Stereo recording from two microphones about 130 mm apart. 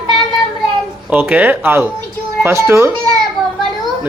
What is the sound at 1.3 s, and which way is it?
A man's voice, 15° right (ahead or behind).